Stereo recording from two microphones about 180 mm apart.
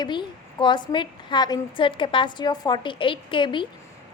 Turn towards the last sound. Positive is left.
turn(degrees=25)  # may be behind; listen again after turning